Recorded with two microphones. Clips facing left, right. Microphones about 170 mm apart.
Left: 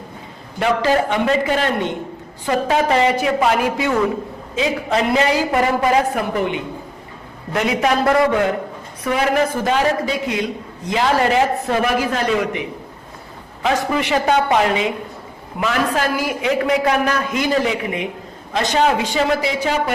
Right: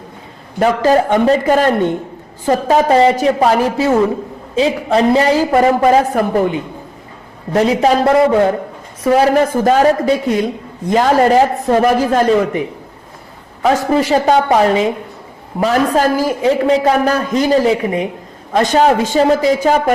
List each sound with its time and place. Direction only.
0.6 s a man's voice: 45° right (ahead or behind)
18.5 s a man's voice: 45° right (ahead or behind)